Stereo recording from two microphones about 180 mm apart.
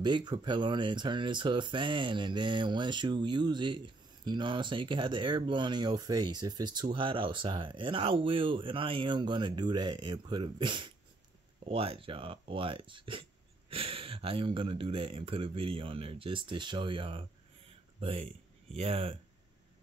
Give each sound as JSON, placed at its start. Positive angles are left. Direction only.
{"t": 0.0, "sound": "speech", "side_deg": -25}